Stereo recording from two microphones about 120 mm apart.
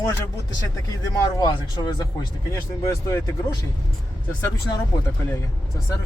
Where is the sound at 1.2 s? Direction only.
35° left (ahead or behind).